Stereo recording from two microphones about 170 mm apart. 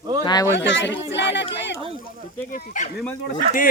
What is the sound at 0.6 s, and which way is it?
Speech, 90° left.